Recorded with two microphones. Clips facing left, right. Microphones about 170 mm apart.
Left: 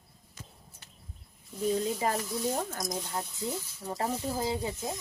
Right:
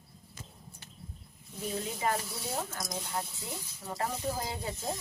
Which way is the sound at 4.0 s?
25° left (ahead or behind).